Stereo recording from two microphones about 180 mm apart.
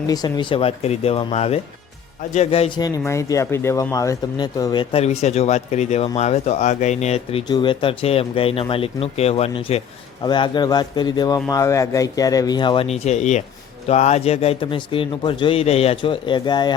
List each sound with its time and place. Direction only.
0.1 s a man's voice: 25° left (ahead or behind)